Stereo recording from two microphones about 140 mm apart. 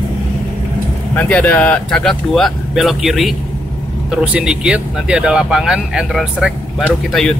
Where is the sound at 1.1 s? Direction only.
10° left (ahead or behind).